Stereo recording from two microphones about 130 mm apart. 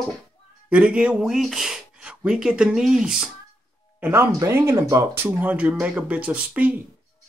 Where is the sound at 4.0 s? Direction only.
20° right (ahead or behind).